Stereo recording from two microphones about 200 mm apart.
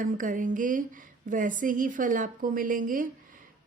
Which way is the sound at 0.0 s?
40° right (ahead or behind).